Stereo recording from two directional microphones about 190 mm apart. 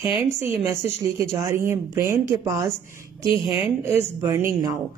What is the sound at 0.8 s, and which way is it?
A woman's voice, 15° right (ahead or behind).